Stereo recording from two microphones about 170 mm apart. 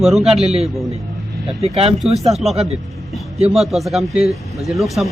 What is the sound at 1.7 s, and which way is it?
Speech, 35° right (ahead or behind).